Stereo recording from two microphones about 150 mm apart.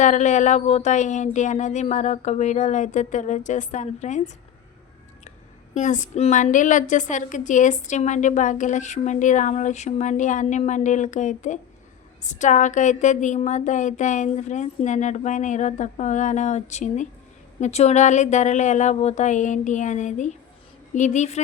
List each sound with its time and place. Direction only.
0.0 s speech: 55° left (ahead or behind)
5.7 s a woman's voice: 55° left (ahead or behind)